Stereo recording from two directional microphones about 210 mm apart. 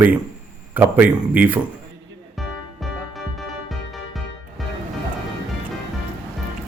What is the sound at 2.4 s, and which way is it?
Music, centre (ahead or behind).